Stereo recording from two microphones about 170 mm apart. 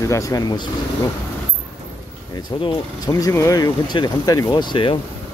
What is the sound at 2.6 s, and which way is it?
Speech, 20° left (ahead or behind).